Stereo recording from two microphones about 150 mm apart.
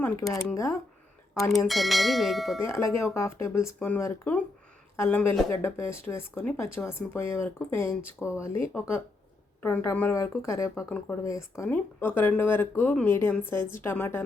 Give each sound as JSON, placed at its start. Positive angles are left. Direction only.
{"t": 0.5, "sound": "speech", "side_deg": 20}
{"t": 1.3, "sound": "speech", "side_deg": 0}
{"t": 2.6, "sound": "speech", "side_deg": 15}